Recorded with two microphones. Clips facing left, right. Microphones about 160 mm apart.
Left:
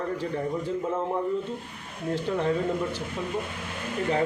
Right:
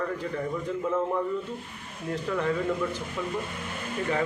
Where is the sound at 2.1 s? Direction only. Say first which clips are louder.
Left 2 dB; 30° left (ahead or behind).